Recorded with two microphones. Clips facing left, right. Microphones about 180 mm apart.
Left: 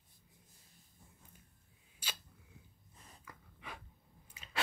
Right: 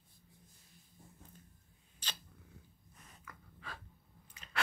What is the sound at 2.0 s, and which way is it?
Camera, 10° left (ahead or behind).